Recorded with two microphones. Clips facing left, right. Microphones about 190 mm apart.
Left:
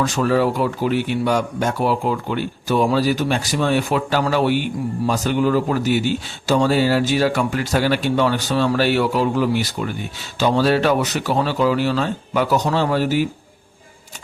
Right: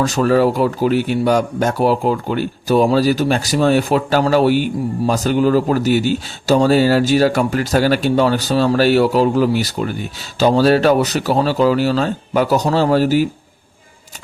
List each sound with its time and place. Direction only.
0.0 s speech: 40° right (ahead or behind)